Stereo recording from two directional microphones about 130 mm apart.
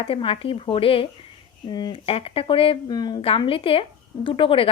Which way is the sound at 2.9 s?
30° left (ahead or behind).